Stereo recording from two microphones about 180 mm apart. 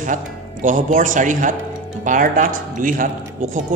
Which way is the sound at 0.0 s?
45° right (ahead or behind).